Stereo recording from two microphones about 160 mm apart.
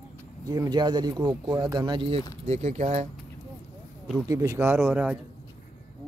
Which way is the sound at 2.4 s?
45° right (ahead or behind).